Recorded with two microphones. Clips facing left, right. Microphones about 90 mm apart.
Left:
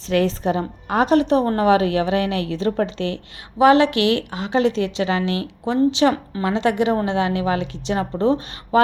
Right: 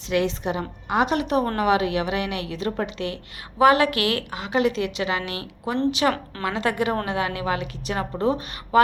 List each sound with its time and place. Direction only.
0.1 s a woman's voice: 40° left (ahead or behind)